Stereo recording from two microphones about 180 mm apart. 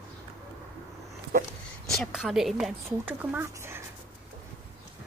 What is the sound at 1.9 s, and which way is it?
A woman's voice, centre (ahead or behind).